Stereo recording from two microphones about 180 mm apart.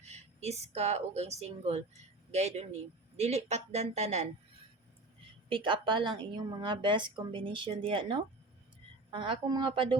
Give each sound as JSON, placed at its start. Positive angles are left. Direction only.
{"t": 0.0, "sound": "a woman's voice", "side_deg": -35}
{"t": 5.5, "sound": "a woman's voice", "side_deg": -30}